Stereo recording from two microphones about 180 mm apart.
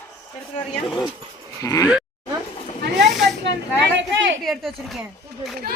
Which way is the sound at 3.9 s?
90° right.